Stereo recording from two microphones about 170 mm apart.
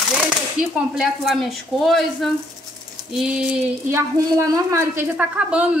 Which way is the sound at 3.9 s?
20° right (ahead or behind).